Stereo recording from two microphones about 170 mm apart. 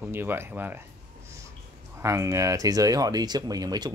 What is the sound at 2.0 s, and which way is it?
Speech, 15° right (ahead or behind).